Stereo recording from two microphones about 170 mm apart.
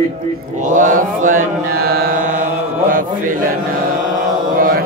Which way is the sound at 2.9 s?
55° right (ahead or behind).